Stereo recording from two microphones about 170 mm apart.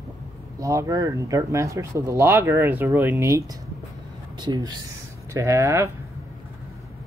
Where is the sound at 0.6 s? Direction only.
20° right (ahead or behind).